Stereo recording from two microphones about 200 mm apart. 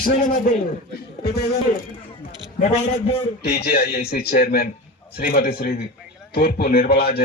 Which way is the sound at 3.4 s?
55° left (ahead or behind).